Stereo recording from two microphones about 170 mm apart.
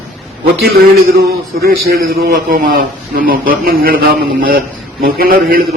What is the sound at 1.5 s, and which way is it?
A man's voice, 65° right (ahead or behind).